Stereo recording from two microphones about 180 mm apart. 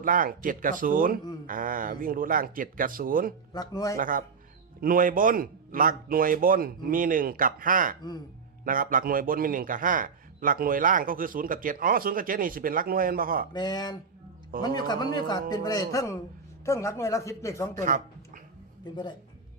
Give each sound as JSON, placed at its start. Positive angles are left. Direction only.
{"t": 0.0, "sound": "a man's voice", "side_deg": -50}
{"t": 3.5, "sound": "speech", "side_deg": 20}
{"t": 3.9, "sound": "a man's voice", "side_deg": -50}
{"t": 13.5, "sound": "speech", "side_deg": 25}
{"t": 17.7, "sound": "a man's voice", "side_deg": -45}